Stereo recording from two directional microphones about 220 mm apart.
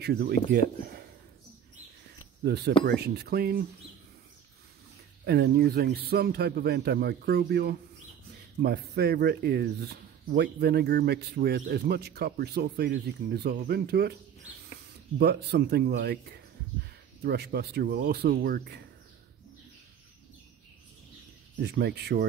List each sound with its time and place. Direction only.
0.0 s speech: 45° right (ahead or behind)
2.4 s speech: 45° right (ahead or behind)
5.2 s speech: 45° right (ahead or behind)
15.1 s speech: 45° right (ahead or behind)
21.5 s speech: 50° right (ahead or behind)